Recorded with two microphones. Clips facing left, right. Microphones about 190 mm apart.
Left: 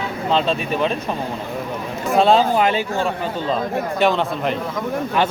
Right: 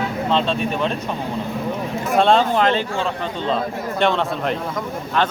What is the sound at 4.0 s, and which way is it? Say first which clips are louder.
Speech: even; centre (ahead or behind).